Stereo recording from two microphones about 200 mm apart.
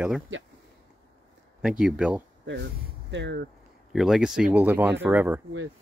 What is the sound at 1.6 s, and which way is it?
Speech, 5° right (ahead or behind).